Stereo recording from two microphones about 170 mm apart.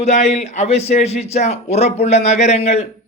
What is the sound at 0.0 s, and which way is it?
Speech, 40° left (ahead or behind).